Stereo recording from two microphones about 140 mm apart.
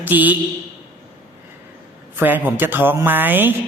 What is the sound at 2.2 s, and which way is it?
Speech, 15° right (ahead or behind).